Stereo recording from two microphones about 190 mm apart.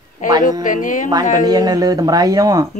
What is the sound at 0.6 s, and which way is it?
Music, 45° left (ahead or behind).